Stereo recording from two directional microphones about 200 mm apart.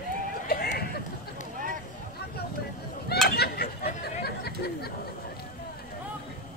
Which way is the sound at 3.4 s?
50° left (ahead or behind).